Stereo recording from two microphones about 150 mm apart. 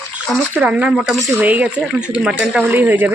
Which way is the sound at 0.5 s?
10° right (ahead or behind).